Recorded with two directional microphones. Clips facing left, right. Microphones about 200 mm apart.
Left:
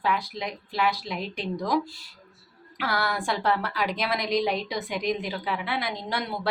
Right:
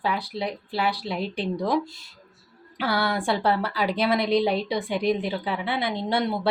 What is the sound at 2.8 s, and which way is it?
A woman's voice, 30° right (ahead or behind).